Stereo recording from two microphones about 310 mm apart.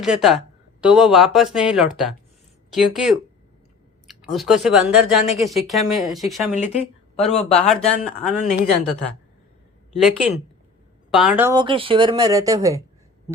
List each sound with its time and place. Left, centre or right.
0.0 s speech: centre
6.5 s speech: left
7.2 s speech: centre
10.0 s speech: centre